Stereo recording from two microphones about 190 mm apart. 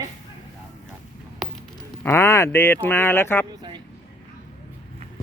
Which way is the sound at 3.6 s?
25° right (ahead or behind).